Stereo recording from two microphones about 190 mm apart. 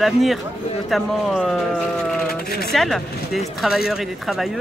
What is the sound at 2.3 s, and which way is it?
Speech, 55° left (ahead or behind).